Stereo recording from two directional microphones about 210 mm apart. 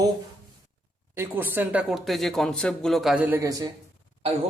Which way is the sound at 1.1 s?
10° right (ahead or behind).